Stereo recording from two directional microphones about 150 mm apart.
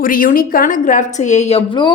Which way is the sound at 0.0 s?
70° left (ahead or behind).